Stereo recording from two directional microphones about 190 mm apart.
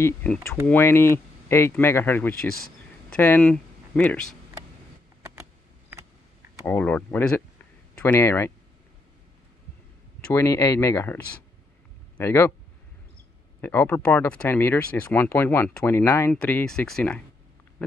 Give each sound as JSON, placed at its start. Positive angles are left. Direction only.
{"t": 0.0, "sound": "speech", "side_deg": 10}
{"t": 6.6, "sound": "speech", "side_deg": 10}
{"t": 10.2, "sound": "speech", "side_deg": 15}
{"t": 12.2, "sound": "speech", "side_deg": 15}
{"t": 13.6, "sound": "speech", "side_deg": 10}